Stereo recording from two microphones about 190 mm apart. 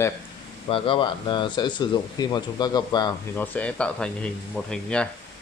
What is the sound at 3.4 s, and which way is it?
Speech, 10° left (ahead or behind).